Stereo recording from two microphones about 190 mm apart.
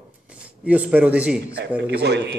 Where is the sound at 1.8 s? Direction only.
60° right (ahead or behind).